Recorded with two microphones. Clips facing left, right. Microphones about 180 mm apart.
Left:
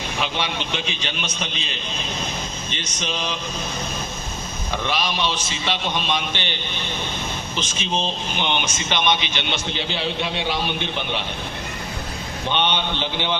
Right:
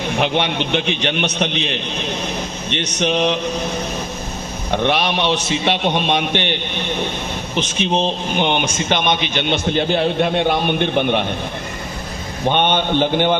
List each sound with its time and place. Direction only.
0.2 s a man's voice: 60° right (ahead or behind)
2.6 s a sound: 65° right (ahead or behind)
4.7 s a man's voice: 65° right (ahead or behind)
12.5 s a man's voice: 50° right (ahead or behind)